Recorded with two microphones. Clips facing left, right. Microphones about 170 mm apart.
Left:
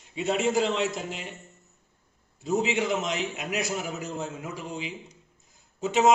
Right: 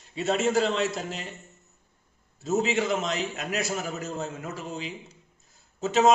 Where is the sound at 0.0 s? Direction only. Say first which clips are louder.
Right 1 dB; 15° left (ahead or behind).